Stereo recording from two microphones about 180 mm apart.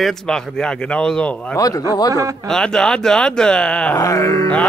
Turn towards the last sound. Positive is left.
turn(degrees=15)  # may be behind; listen again after turning